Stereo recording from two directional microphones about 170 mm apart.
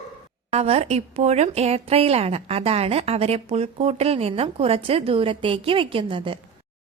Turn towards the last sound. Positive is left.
turn(degrees=-30)  # may be behind; listen again after turning